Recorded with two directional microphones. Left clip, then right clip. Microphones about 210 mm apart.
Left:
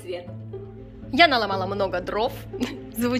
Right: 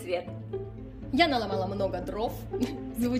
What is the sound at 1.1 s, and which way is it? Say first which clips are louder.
A woman's voice: left 7 dB; centre (ahead or behind).